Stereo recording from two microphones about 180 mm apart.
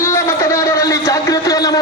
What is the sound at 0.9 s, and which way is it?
Music, 20° left (ahead or behind).